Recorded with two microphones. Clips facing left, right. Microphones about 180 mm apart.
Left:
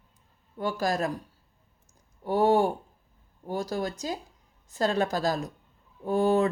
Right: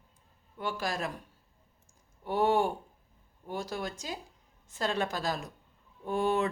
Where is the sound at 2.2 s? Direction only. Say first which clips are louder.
Left 5 dB; 40° left (ahead or behind).